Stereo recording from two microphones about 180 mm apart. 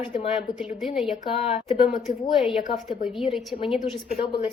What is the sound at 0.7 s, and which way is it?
Speech, centre (ahead or behind).